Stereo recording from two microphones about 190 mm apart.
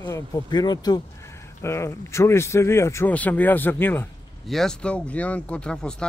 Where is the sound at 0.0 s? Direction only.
15° left (ahead or behind).